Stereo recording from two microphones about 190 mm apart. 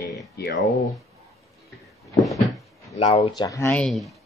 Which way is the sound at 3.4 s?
15° left (ahead or behind).